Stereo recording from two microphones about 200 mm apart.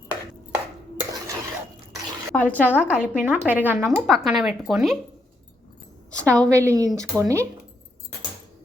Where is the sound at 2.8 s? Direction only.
5° right (ahead or behind).